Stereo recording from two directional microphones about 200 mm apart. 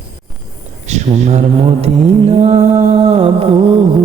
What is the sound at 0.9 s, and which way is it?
Mantra, 35° right (ahead or behind).